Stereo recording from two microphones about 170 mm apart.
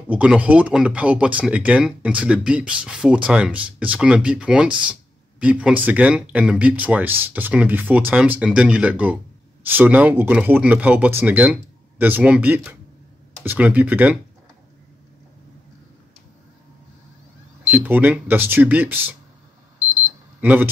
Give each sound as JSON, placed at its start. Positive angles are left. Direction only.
{"t": 0.1, "sound": "speech", "side_deg": -10}
{"t": 17.6, "sound": "speech", "side_deg": -10}
{"t": 20.3, "sound": "speech", "side_deg": -10}